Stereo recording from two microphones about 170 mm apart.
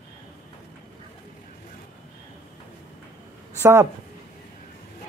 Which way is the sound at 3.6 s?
15° right (ahead or behind).